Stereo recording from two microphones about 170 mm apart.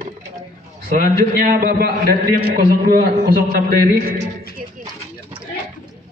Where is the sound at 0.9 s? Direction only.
55° right (ahead or behind).